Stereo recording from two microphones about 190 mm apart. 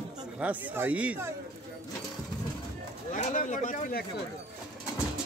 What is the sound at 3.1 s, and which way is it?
Speech, 40° left (ahead or behind).